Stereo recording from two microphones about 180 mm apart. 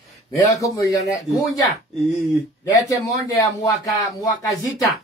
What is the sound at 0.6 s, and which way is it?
Speech, 20° left (ahead or behind).